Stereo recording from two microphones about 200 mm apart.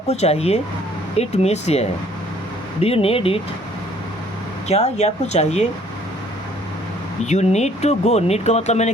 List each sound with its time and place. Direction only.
0.1 s speech: 35° left (ahead or behind)
4.7 s speech: 35° left (ahead or behind)
7.3 s speech: 35° left (ahead or behind)